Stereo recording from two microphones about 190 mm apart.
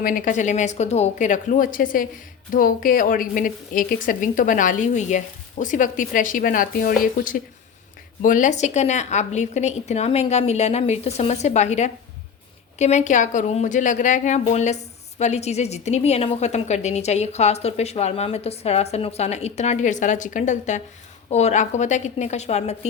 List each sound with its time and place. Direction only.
0.0 s a woman's voice: 45° left (ahead or behind)